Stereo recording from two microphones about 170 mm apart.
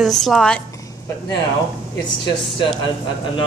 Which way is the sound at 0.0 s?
Centre (ahead or behind).